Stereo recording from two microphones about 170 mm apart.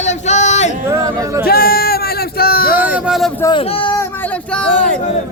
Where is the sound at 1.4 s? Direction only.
60° left (ahead or behind).